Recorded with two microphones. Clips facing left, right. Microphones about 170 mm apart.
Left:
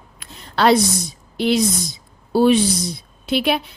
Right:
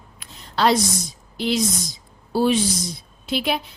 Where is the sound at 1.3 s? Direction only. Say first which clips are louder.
Left 4 dB; 60° left (ahead or behind).